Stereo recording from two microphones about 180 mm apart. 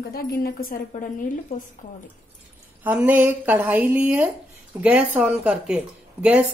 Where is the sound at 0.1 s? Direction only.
60° left (ahead or behind).